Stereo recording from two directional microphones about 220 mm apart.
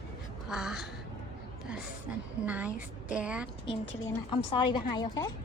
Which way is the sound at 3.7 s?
20° left (ahead or behind).